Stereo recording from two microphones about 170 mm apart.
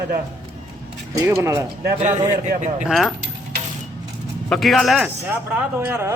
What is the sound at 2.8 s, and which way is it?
Speech, centre (ahead or behind).